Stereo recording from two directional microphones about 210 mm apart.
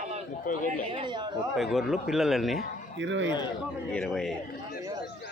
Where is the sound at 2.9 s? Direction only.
60° right (ahead or behind).